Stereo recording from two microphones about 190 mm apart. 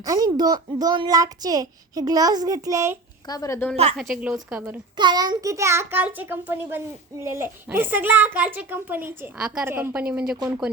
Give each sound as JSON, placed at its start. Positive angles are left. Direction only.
{"t": 0.0, "sound": "a child's voice", "side_deg": -20}
{"t": 3.2, "sound": "a woman's voice", "side_deg": 20}
{"t": 3.9, "sound": "a woman's voice", "side_deg": -5}
{"t": 4.9, "sound": "a child's voice", "side_deg": -20}